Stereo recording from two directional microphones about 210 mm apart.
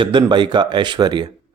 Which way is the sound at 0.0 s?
20° right (ahead or behind).